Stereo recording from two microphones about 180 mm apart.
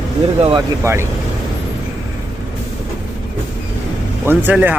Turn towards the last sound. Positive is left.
turn(degrees=-10)  # may be behind; listen again after turning